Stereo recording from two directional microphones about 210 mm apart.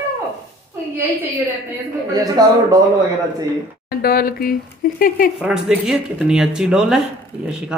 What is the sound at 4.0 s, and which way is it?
Speech, 45° left (ahead or behind).